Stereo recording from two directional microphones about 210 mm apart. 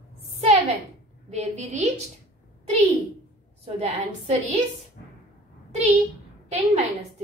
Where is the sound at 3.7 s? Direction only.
30° right (ahead or behind).